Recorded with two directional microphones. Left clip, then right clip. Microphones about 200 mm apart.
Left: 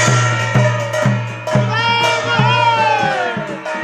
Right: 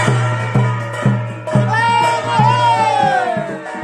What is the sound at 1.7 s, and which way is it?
Music, 15° right (ahead or behind).